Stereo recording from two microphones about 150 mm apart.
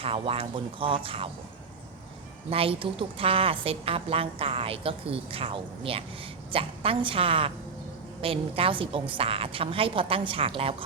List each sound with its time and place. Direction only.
0.0 s a woman's voice: 40° right (ahead or behind)
2.5 s a woman's voice: 40° right (ahead or behind)